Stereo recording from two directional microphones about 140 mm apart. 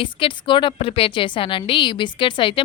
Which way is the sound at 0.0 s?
35° left (ahead or behind).